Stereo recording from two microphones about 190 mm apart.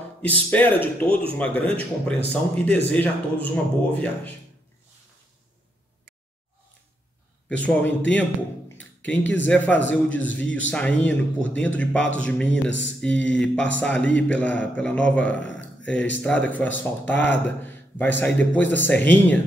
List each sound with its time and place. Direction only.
0.2 s speech: 10° left (ahead or behind)
7.4 s speech: 5° left (ahead or behind)
8.7 s a sound: 5° left (ahead or behind)
9.2 s speech: 75° left (ahead or behind)
10.0 s speech: 10° left (ahead or behind)
12.6 s speech: 70° left (ahead or behind)
13.0 s speech: 5° left (ahead or behind)